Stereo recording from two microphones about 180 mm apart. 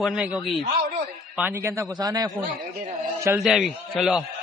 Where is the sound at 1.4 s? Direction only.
15° right (ahead or behind).